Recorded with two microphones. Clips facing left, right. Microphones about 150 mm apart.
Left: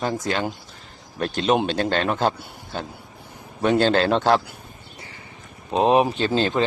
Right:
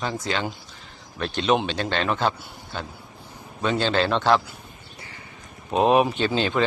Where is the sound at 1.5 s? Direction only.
45° left (ahead or behind).